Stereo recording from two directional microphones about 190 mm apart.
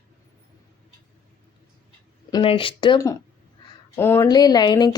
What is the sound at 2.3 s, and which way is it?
Speech, 30° left (ahead or behind).